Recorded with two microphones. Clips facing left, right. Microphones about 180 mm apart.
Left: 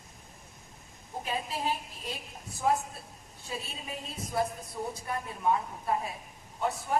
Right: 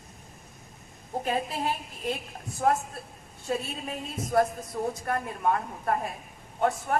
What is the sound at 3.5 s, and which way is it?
A woman's voice, 55° right (ahead or behind).